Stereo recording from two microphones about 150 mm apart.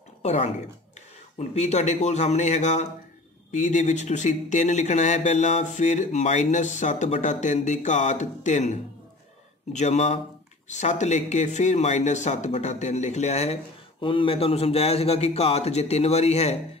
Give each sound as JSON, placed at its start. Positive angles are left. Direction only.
{"t": 0.2, "sound": "speech", "side_deg": 45}
{"t": 14.0, "sound": "speech", "side_deg": 35}